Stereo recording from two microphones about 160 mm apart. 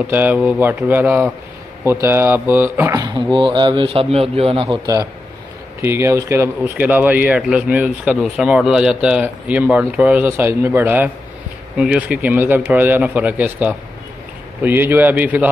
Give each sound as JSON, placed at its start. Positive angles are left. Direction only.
{"t": 0.0, "sound": "speech", "side_deg": -10}